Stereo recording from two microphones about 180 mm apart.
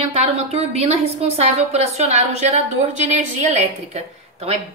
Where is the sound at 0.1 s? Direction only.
35° right (ahead or behind).